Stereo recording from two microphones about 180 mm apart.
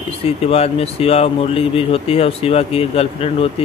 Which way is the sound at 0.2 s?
35° left (ahead or behind).